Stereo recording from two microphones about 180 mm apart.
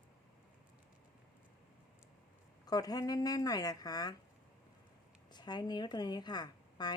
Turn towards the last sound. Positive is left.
turn(degrees=25)  # may be behind; listen again after turning